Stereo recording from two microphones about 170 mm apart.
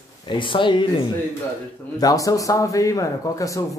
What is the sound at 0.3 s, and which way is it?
Speech, 30° left (ahead or behind).